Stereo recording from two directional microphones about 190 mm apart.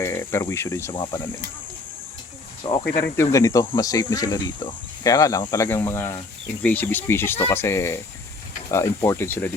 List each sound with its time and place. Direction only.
0.0 s speech: 10° left (ahead or behind)
0.9 s speech: 25° left (ahead or behind)
2.6 s speech: 20° left (ahead or behind)